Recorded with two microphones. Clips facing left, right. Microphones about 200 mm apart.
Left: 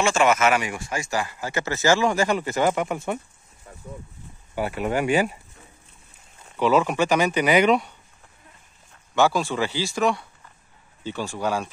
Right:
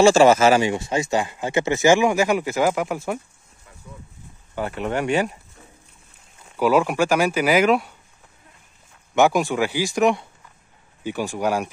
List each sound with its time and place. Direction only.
0.0 s speech: 35° right (ahead or behind); by 3.2 s 5° right (ahead or behind)
4.6 s speech: 5° left (ahead or behind)
6.5 s speech: 10° right (ahead or behind)
9.1 s speech: 15° right (ahead or behind)